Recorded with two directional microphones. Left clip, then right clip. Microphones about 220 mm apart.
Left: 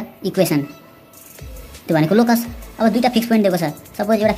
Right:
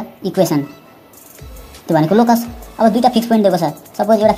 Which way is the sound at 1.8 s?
5° left (ahead or behind).